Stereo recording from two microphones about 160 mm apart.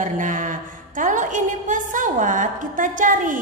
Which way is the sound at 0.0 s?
55° right (ahead or behind).